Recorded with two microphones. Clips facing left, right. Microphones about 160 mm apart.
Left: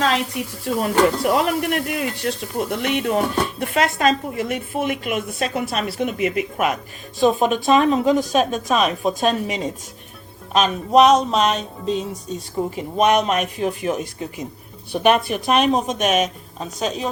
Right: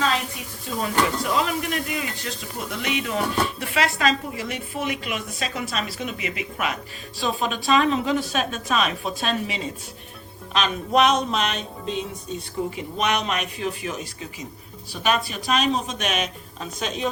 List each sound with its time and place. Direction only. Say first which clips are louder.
0.8 s speech: left 6 dB; 60° left (ahead or behind); by 17.1 s 40° left (ahead or behind)